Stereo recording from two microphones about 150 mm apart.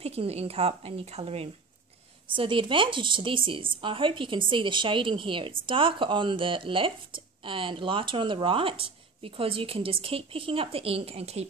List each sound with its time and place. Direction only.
0.0 s a woman's voice: 45° right (ahead or behind)